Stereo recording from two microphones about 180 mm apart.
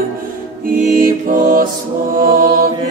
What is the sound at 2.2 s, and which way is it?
Mantra, 50° right (ahead or behind).